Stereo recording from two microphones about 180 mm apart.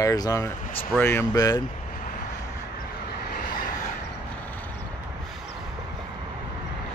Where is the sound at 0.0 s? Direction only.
20° left (ahead or behind).